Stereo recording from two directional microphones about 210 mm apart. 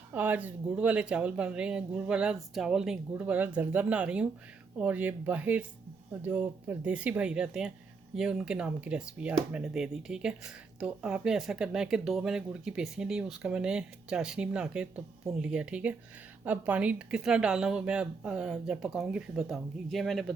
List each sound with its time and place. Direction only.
0.1 s speech: 10° right (ahead or behind)